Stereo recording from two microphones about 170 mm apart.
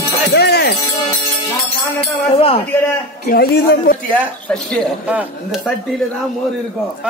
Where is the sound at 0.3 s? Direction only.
75° left (ahead or behind).